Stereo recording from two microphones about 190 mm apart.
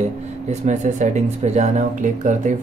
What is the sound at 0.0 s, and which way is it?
Speech, 35° right (ahead or behind).